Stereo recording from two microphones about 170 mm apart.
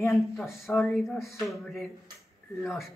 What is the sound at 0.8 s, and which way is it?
A man's voice, centre (ahead or behind).